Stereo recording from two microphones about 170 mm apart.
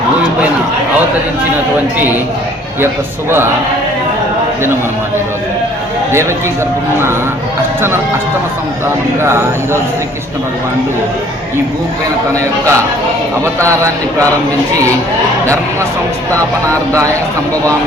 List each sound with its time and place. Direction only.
2.8 s a man's voice: 15° right (ahead or behind)
9.2 s a man's voice: 15° right (ahead or behind)
12.3 s a man's voice: 15° right (ahead or behind)